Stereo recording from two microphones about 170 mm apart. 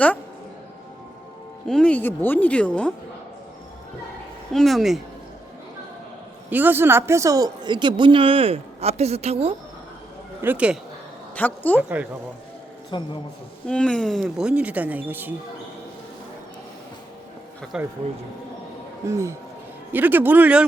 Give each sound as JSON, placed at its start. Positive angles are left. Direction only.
{"t": 1.6, "sound": "speech", "side_deg": 5}
{"t": 4.5, "sound": "speech", "side_deg": 0}
{"t": 6.5, "sound": "speech", "side_deg": -10}
{"t": 10.4, "sound": "speech", "side_deg": -10}
{"t": 11.3, "sound": "speech", "side_deg": 10}
{"t": 11.8, "sound": "speech", "side_deg": -10}
{"t": 12.9, "sound": "a man's voice", "side_deg": 25}
{"t": 13.7, "sound": "speech", "side_deg": 5}
{"t": 17.7, "sound": "speech", "side_deg": -5}
{"t": 19.0, "sound": "speech", "side_deg": -15}